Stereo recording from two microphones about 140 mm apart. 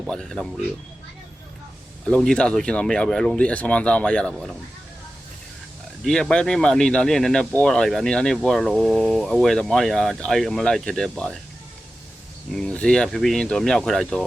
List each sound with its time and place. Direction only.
0.0 s speech: centre (ahead or behind)
2.0 s speech: 5° left (ahead or behind)
6.0 s speech: 5° left (ahead or behind)
12.5 s speech: 5° left (ahead or behind)